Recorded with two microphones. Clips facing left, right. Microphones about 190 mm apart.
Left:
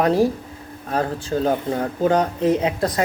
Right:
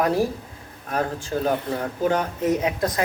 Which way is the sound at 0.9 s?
30° left (ahead or behind).